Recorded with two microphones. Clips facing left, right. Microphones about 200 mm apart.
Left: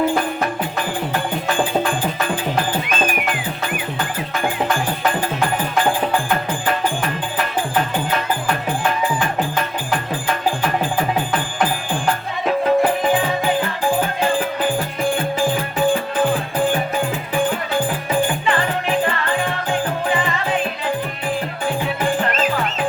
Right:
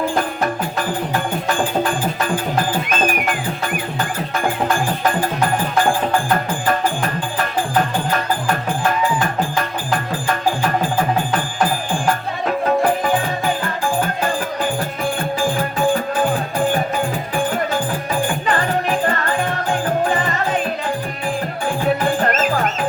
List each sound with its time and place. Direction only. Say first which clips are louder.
18.4 s music: right 1 dB; 45° right (ahead or behind)
22.2 s music: right 2 dB; 45° right (ahead or behind)